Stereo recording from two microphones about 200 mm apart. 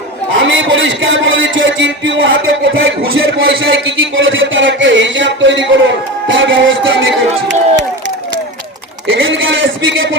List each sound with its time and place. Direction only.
0.3 s speech: 70° right (ahead or behind)
9.0 s speech: 75° right (ahead or behind)